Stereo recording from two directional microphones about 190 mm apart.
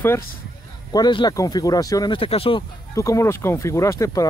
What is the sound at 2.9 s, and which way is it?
Speech, 15° left (ahead or behind).